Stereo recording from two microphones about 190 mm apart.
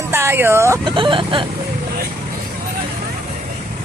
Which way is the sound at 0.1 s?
15° right (ahead or behind).